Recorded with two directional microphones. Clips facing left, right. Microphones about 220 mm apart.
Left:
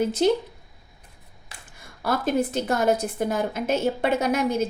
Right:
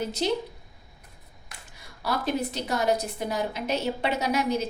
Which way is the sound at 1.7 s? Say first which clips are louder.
Left 4 dB; 50° left (ahead or behind).